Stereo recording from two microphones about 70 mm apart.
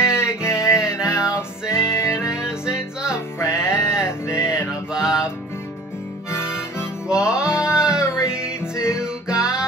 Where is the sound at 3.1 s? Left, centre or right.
Left.